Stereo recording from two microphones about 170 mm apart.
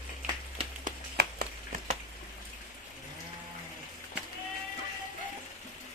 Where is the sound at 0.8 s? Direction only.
65° right (ahead or behind).